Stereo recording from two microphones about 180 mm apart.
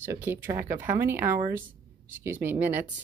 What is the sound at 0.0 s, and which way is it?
A woman's voice, 10° right (ahead or behind).